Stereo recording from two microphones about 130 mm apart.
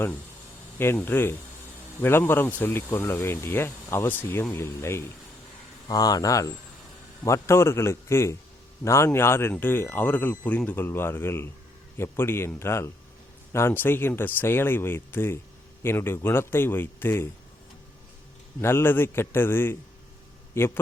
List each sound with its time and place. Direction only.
0.8 s a man's voice: 15° left (ahead or behind)
18.6 s speech: 20° left (ahead or behind)